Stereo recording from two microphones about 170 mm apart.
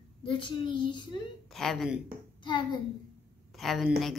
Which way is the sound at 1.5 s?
Centre (ahead or behind).